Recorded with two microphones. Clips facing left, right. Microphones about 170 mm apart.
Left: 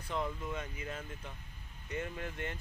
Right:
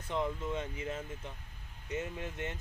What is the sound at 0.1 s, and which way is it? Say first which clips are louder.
Speech: right 3 dB; 20° right (ahead or behind).